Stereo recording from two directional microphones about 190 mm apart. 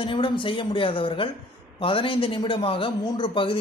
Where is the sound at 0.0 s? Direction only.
25° left (ahead or behind).